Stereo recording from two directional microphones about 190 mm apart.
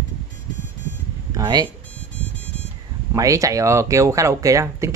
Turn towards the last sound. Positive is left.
turn(degrees=-15)  # may be behind; listen again after turning